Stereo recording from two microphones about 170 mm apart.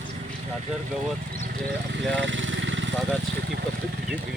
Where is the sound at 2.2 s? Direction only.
90° right.